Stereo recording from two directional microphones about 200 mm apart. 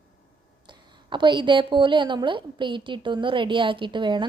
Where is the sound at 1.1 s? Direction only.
25° right (ahead or behind).